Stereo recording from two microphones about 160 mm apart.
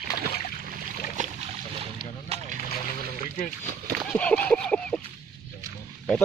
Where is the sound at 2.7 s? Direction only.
55° left (ahead or behind).